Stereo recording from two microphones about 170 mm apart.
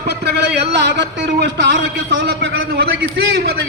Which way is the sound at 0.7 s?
85° right.